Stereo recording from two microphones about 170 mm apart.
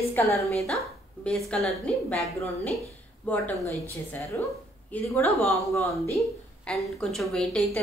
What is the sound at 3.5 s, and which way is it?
Speech, 20° right (ahead or behind).